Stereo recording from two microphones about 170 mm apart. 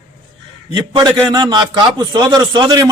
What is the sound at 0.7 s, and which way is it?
A man's voice, 25° right (ahead or behind).